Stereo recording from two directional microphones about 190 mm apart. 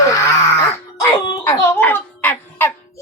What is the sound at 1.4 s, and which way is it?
A child's voice, 10° left (ahead or behind).